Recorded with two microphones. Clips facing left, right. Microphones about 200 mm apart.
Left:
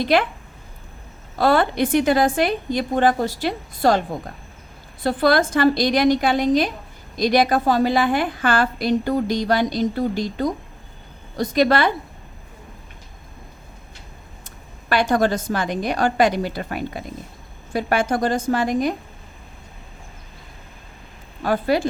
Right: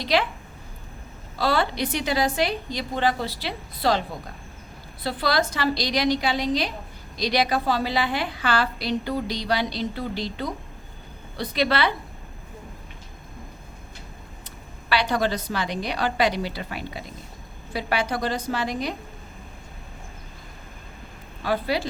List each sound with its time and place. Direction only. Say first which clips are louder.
0.0 s a woman's voice: left 5 dB; 50° left (ahead or behind)
1.4 s a woman's voice: left 6 dB; 50° left (ahead or behind)
5.0 s a woman's voice: left 7 dB; 50° left (ahead or behind)
14.8 s a woman's voice: left 5 dB; 50° left (ahead or behind)
21.4 s a woman's voice: left 5 dB; 50° left (ahead or behind)